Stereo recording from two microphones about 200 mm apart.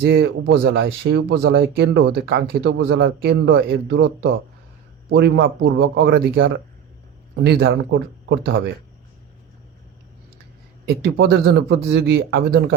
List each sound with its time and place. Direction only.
0.0 s speech: 55° right (ahead or behind)
10.8 s speech: 55° right (ahead or behind)